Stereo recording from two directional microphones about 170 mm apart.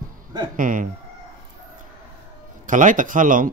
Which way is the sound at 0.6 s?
50° right (ahead or behind).